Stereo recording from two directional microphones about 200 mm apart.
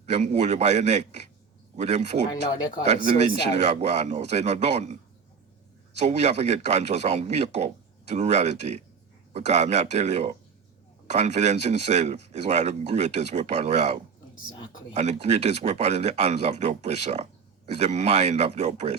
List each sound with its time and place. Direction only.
0.0 s speech: 35° right (ahead or behind)
2.6 s speech: 25° left (ahead or behind)
2.8 s speech: 35° right (ahead or behind)
6.0 s speech: 35° right (ahead or behind)